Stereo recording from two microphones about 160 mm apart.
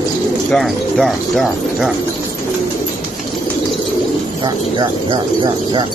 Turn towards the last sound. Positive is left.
turn(degrees=-30)  # may be behind; listen again after turning